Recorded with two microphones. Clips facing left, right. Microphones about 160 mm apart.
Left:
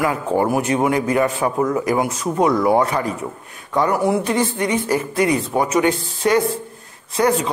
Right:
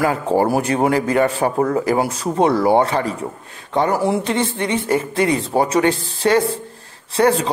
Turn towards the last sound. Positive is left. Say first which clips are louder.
# right 2 dB
turn(degrees=-30)  # may be behind; listen again after turning